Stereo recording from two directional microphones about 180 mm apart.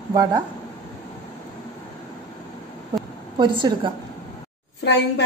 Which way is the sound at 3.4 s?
25° right (ahead or behind).